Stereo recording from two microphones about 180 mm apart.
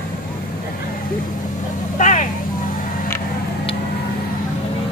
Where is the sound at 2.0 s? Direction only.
45° left (ahead or behind).